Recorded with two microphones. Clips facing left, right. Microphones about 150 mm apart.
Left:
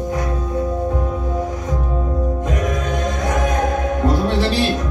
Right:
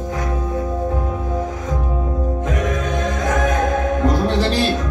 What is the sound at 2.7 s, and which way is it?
Choir, 20° left (ahead or behind).